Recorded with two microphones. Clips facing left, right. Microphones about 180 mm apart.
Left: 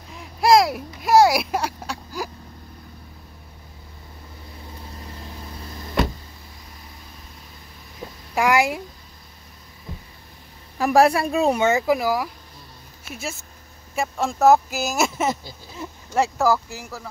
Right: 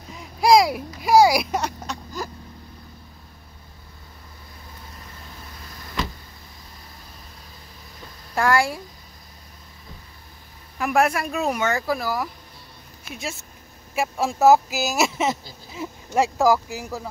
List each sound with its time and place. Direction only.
0.1 s a sound: centre (ahead or behind)
8.4 s speech: 20° left (ahead or behind)
10.8 s speech: 35° left (ahead or behind); by 13.4 s 5° left (ahead or behind)
13.9 s speech: 5° right (ahead or behind)